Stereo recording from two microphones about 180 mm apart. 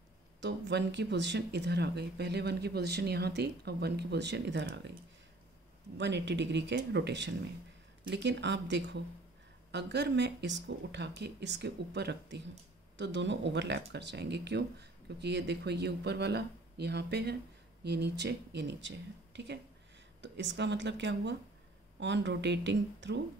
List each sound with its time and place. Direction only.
0.4 s speech: 70° right (ahead or behind)
5.9 s speech: 75° right (ahead or behind)